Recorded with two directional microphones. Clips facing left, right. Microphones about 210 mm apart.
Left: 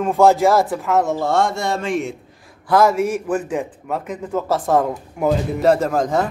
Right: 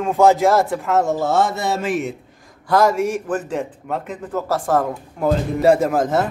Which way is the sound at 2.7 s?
10° left (ahead or behind).